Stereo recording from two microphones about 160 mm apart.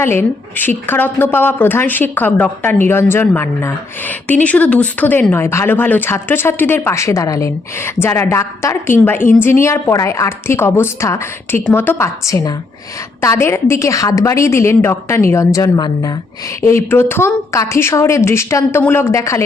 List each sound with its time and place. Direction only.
0.0 s a woman's voice: 15° left (ahead or behind)